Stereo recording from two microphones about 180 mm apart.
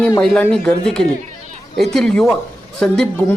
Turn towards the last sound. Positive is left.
turn(degrees=5)  # may be behind; listen again after turning